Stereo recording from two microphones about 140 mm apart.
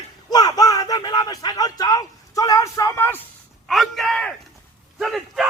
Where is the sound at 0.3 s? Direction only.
30° left (ahead or behind).